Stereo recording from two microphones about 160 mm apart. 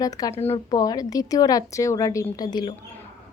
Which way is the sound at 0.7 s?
25° left (ahead or behind).